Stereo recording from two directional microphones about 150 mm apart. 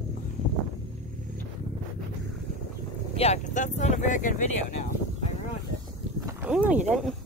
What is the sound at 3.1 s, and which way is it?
Speech, 45° left (ahead or behind).